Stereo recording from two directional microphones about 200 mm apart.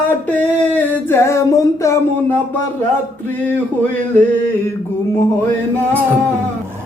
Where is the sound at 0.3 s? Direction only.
10° left (ahead or behind).